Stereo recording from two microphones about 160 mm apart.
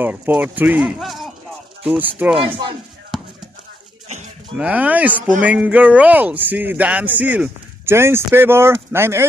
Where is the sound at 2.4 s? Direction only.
30° right (ahead or behind).